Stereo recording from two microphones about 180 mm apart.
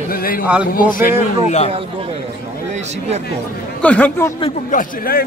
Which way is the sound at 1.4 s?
40° left (ahead or behind).